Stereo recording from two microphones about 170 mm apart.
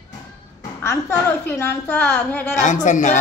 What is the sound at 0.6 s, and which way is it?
A woman's voice, 15° left (ahead or behind).